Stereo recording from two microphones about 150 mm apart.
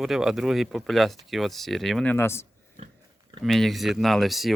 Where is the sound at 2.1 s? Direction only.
15° left (ahead or behind).